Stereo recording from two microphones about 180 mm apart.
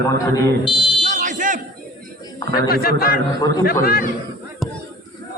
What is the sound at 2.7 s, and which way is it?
A man's voice, 55° left (ahead or behind).